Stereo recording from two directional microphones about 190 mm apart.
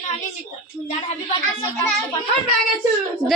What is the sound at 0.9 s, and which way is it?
Speech, 35° left (ahead or behind).